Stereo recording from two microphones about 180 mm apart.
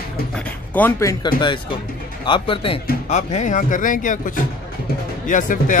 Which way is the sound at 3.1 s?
40° left (ahead or behind).